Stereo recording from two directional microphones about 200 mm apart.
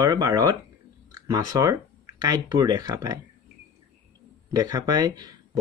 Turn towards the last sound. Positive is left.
turn(degrees=-20)  # may be behind; listen again after turning